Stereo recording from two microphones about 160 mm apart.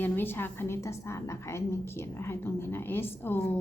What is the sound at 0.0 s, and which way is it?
A woman's voice, 15° left (ahead or behind).